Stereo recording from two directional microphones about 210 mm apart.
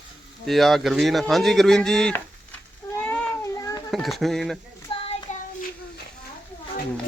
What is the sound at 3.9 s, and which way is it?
Speech, centre (ahead or behind).